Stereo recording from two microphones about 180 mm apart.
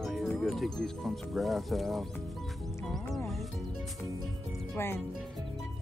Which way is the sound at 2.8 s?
Centre (ahead or behind).